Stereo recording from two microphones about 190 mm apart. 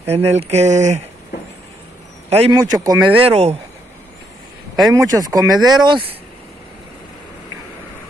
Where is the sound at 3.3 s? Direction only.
35° right (ahead or behind).